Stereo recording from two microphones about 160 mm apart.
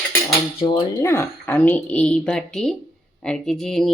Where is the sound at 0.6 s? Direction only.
30° left (ahead or behind).